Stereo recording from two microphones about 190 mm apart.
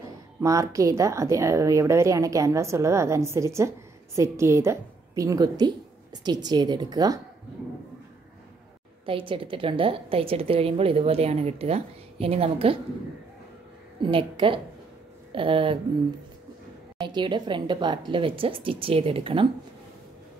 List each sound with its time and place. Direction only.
0.4 s a woman's voice: 15° right (ahead or behind)
9.0 s a woman's voice: 25° right (ahead or behind)
14.0 s a woman's voice: 25° right (ahead or behind)
17.0 s a woman's voice: 25° right (ahead or behind)